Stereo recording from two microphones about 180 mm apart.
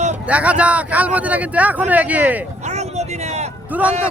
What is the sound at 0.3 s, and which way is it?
Speech, 5° right (ahead or behind).